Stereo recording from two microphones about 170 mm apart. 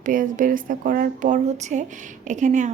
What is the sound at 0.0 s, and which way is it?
A woman's voice, 50° right (ahead or behind).